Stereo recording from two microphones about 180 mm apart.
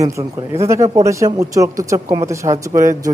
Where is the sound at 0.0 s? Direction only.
15° right (ahead or behind).